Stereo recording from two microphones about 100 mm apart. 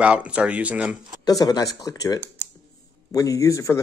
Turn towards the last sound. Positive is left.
turn(degrees=30)  # may be behind; listen again after turning